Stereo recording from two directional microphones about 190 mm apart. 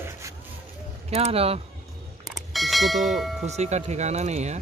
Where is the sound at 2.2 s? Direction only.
Centre (ahead or behind).